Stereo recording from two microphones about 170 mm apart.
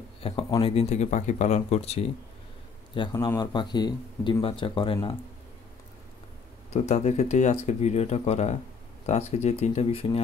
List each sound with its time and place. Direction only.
0.2 s speech: 30° left (ahead or behind)
2.9 s a man's voice: 25° left (ahead or behind)
6.7 s speech: 40° left (ahead or behind)